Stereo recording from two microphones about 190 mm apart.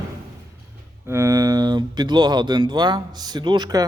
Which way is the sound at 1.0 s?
15° right (ahead or behind).